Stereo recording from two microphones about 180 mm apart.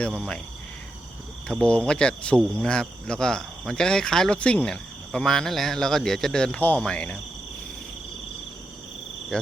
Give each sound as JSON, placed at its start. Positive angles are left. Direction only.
{"t": 0.0, "sound": "speech", "side_deg": 5}
{"t": 1.5, "sound": "speech", "side_deg": 5}
{"t": 9.3, "sound": "speech", "side_deg": 5}